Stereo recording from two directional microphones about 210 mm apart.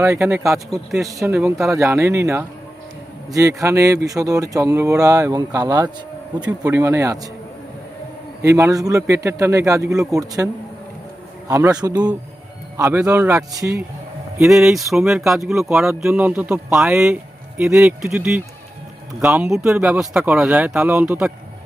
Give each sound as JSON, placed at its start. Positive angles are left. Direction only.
{"t": 0.0, "sound": "speech", "side_deg": -15}
{"t": 0.7, "sound": "speech", "side_deg": 0}
{"t": 1.3, "sound": "speech", "side_deg": -10}
{"t": 8.4, "sound": "speech", "side_deg": -15}
{"t": 14.3, "sound": "speech", "side_deg": 0}